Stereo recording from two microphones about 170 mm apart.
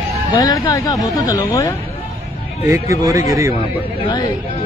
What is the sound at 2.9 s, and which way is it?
Speech, 20° right (ahead or behind).